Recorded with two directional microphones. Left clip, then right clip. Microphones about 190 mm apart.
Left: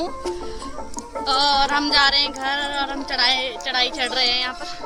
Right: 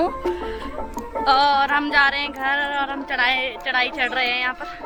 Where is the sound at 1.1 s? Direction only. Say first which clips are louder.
Right 2 dB; 5° left (ahead or behind).